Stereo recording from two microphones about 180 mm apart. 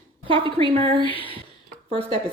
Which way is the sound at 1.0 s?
30° left (ahead or behind).